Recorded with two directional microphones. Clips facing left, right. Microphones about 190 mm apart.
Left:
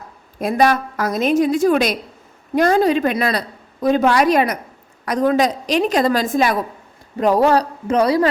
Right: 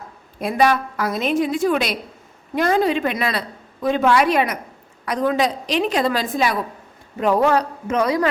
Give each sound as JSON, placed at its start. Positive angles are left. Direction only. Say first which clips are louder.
{"t": 0.3, "sound": "a woman's voice", "louder": "left 2 dB", "side_deg": 45}
{"t": 7.2, "sound": "a woman's voice", "louder": "left 3 dB", "side_deg": 35}